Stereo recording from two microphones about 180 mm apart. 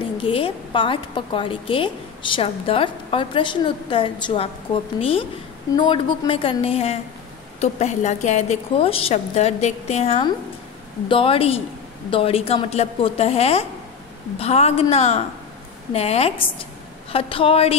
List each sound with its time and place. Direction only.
0.2 s a woman's voice: 30° left (ahead or behind)
5.8 s a woman's voice: 30° left (ahead or behind)